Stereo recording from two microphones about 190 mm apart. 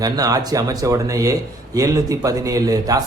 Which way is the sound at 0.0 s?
20° right (ahead or behind).